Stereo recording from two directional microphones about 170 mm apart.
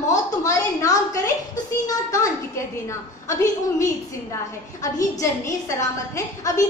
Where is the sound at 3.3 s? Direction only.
20° left (ahead or behind).